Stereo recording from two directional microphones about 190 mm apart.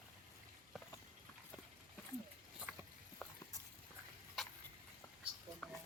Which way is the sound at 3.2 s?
5° left (ahead or behind).